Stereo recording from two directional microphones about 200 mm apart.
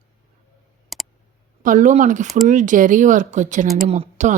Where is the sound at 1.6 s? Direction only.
40° right (ahead or behind).